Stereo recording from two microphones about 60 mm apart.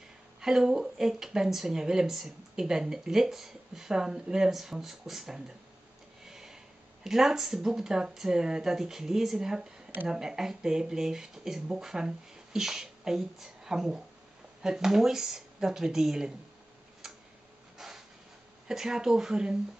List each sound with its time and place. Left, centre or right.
0.4 s a woman's voice: centre
9.6 s a sound: right
10.0 s a woman's voice: centre
17.0 s tick-tock: centre
17.7 s a sound: centre
18.7 s a woman's voice: centre